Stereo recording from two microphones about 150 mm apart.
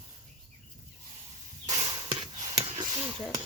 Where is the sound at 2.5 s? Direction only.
40° right (ahead or behind).